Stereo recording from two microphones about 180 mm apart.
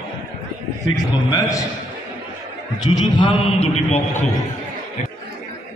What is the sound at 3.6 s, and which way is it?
Speech, 35° left (ahead or behind).